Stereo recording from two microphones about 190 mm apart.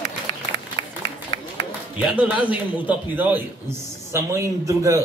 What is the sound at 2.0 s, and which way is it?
A man's voice, 5° right (ahead or behind).